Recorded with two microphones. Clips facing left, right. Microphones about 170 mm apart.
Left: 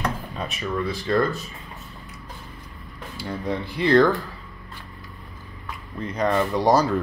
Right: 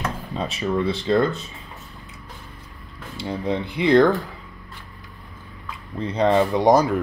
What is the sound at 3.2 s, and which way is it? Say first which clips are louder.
Speech: right 3 dB; 20° right (ahead or behind).